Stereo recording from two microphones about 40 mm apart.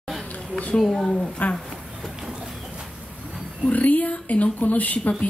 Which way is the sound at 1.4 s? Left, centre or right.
Left.